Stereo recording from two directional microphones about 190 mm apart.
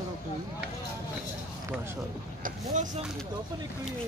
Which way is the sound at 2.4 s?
40° right (ahead or behind).